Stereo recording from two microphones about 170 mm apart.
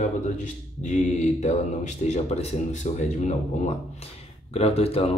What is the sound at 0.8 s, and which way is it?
Mantra, 45° left (ahead or behind).